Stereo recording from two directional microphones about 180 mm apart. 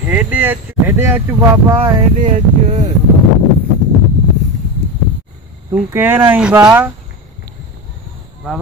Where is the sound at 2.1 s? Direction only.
45° right (ahead or behind).